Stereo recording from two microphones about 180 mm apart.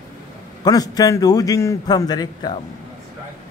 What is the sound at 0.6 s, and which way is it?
A man's voice, 20° left (ahead or behind).